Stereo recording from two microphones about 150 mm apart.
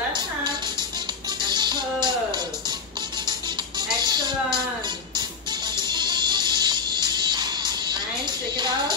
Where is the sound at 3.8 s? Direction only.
30° right (ahead or behind).